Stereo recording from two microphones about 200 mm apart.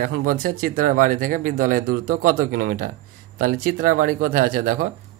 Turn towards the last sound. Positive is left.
turn(degrees=-45)  # may be behind; listen again after turning